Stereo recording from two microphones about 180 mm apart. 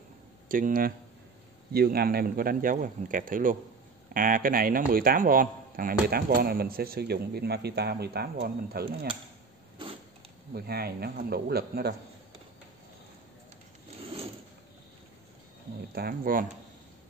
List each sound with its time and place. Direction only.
0.5 s a man's voice: 50° right (ahead or behind)
10.5 s a man's voice: 60° right (ahead or behind)
15.9 s a man's voice: 60° right (ahead or behind)